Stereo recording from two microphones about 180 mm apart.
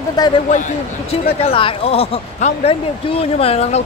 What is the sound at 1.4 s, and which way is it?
Speech, 30° left (ahead or behind).